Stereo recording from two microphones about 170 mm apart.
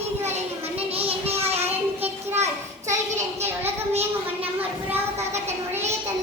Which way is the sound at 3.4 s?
40° right (ahead or behind).